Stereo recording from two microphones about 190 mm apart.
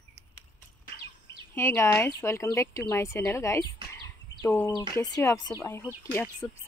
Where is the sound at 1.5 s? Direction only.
15° left (ahead or behind).